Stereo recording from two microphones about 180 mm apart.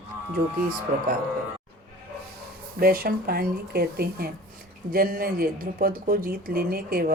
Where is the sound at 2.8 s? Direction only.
55° right (ahead or behind).